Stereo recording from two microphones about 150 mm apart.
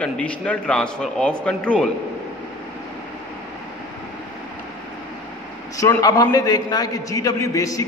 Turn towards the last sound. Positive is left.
turn(degrees=25)  # may be behind; listen again after turning